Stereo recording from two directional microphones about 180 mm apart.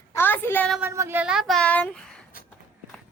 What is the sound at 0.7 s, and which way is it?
Child singing, 10° right (ahead or behind).